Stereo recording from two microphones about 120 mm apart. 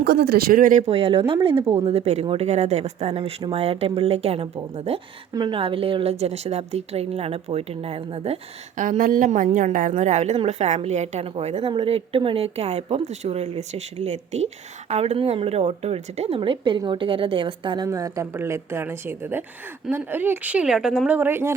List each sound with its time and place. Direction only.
0.9 s a woman's voice: 55° right (ahead or behind)
2.5 s speech: 70° right (ahead or behind)
5.3 s speech: 40° right (ahead or behind); by 8.4 s 55° right (ahead or behind)
8.7 s a woman's voice: 90° right; by 17.8 s 45° right (ahead or behind)
17.8 s a woman's voice: 25° right (ahead or behind); by 21.2 s 5° right (ahead or behind)
21.2 s a woman's voice: 20° right (ahead or behind)